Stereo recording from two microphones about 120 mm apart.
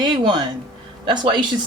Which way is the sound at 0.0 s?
40° right (ahead or behind).